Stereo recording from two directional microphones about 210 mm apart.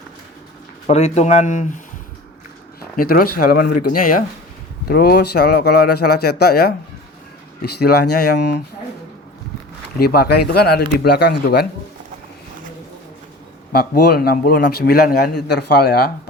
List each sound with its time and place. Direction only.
0.9 s speech: 30° left (ahead or behind)
2.9 s speech: 40° left (ahead or behind)
8.0 s speech: 90° left
8.4 s speech: 50° left (ahead or behind)
10.0 s speech: 50° left (ahead or behind)
13.7 s speech: 50° left (ahead or behind)